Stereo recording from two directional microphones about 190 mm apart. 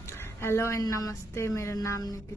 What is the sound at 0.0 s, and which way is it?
A woman's voice, 15° left (ahead or behind).